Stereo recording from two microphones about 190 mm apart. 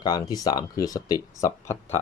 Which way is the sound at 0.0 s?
20° left (ahead or behind).